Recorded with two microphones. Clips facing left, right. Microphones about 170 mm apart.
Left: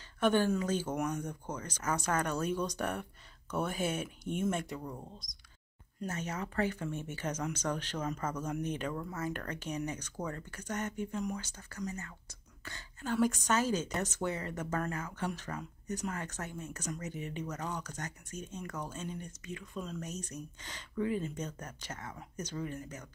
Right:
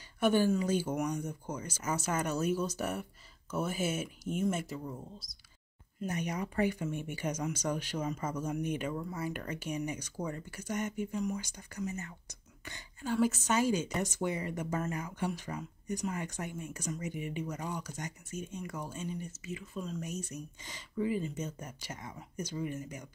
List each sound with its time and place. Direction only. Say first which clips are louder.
0.2 s speech: right 1 dB; 10° right (ahead or behind)